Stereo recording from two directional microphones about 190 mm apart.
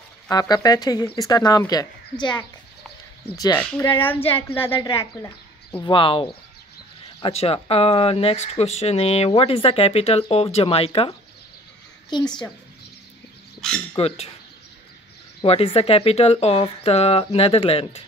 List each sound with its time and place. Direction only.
0.3 s speech: 20° left (ahead or behind)
3.3 s speech: 20° left (ahead or behind)
5.9 s speech: 30° left (ahead or behind)
13.9 s speech: 30° left (ahead or behind)
15.4 s speech: 30° left (ahead or behind)